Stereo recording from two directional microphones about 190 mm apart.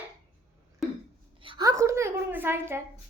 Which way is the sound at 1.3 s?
25° right (ahead or behind).